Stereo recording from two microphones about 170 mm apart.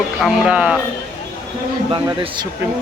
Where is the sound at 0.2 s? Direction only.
5° right (ahead or behind).